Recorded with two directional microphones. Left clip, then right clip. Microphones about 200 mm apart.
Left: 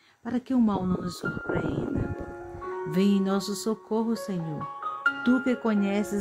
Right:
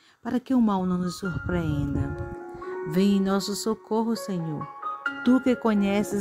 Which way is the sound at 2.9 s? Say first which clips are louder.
Right 2 dB; 25° right (ahead or behind).